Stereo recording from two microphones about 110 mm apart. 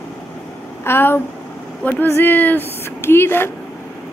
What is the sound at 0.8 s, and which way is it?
A woman's voice, 20° left (ahead or behind).